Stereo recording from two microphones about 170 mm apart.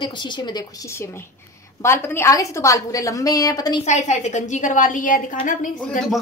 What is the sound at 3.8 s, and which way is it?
A woman's voice, 40° left (ahead or behind).